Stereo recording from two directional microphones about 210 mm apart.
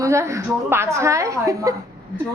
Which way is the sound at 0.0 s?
15° right (ahead or behind).